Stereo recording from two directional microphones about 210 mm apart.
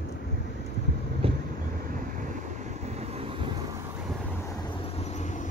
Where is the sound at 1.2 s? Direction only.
25° right (ahead or behind).